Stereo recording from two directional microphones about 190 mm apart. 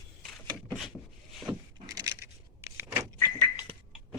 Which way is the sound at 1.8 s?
20° right (ahead or behind).